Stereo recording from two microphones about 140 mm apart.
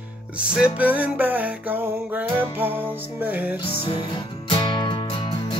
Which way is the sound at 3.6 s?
40° left (ahead or behind).